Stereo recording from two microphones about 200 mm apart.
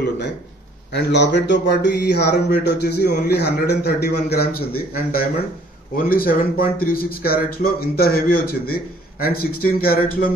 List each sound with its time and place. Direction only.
0.9 s speech: 60° left (ahead or behind)